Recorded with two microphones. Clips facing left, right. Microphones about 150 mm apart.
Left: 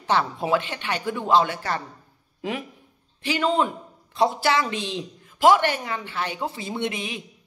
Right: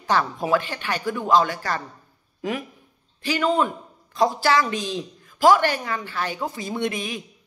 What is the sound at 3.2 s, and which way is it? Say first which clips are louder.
Speech: right 1 dB; 25° left (ahead or behind).